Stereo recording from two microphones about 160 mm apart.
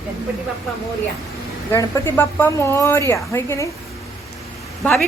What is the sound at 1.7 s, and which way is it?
A woman's voice, 15° left (ahead or behind).